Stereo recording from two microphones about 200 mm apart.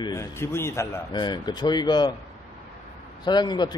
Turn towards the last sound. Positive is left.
turn(degrees=20)  # may be behind; listen again after turning